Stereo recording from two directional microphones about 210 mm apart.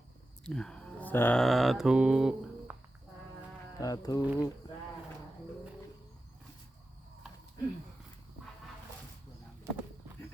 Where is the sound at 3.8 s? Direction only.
15° left (ahead or behind).